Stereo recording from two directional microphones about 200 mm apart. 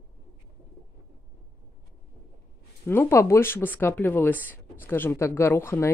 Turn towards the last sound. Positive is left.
turn(degrees=15)  # may be behind; listen again after turning